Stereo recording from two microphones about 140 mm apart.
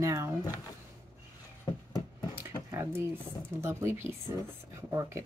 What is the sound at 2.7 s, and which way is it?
Speech, 20° right (ahead or behind).